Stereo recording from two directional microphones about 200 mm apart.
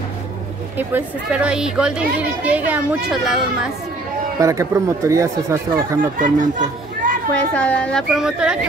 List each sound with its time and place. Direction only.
0.7 s a child's voice: 5° right (ahead or behind)
4.4 s speech: 15° right (ahead or behind)
6.1 s speech: 40° right (ahead or behind)
7.5 s a child's voice: 5° left (ahead or behind)